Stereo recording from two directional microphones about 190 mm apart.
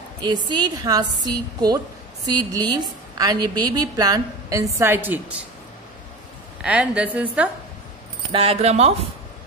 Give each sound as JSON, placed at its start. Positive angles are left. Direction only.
{"t": 0.5, "sound": "a woman's voice", "side_deg": -20}
{"t": 6.6, "sound": "a woman's voice", "side_deg": -5}
{"t": 8.3, "sound": "speech", "side_deg": -30}